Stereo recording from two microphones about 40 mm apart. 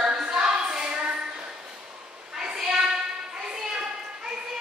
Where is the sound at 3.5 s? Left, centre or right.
Centre.